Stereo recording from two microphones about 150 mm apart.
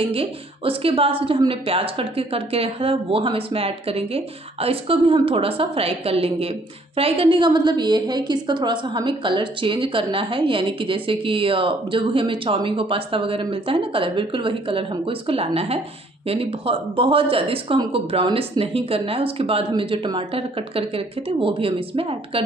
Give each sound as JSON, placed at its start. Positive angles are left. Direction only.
{"t": 0.1, "sound": "a woman's voice", "side_deg": -40}